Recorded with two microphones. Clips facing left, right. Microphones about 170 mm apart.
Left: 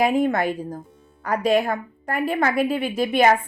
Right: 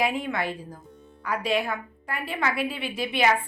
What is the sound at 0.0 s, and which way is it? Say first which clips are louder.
Speech: left 7 dB; 45° left (ahead or behind).